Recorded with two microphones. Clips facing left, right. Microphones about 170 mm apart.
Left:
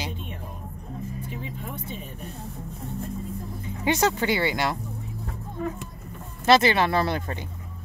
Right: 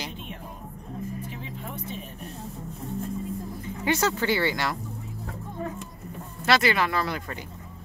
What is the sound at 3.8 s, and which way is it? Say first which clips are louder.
Speech: left 2 dB; 20° left (ahead or behind).